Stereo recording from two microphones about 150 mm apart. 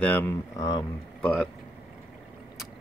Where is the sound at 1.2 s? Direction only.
Centre (ahead or behind).